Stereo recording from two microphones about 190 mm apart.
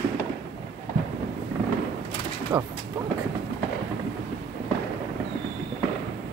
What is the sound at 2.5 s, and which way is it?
Speech, 25° right (ahead or behind).